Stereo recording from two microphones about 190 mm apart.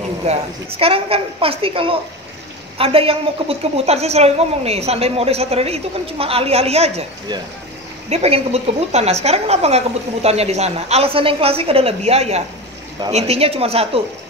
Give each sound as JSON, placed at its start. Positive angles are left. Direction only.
{"t": 0.3, "sound": "a woman's voice", "side_deg": -30}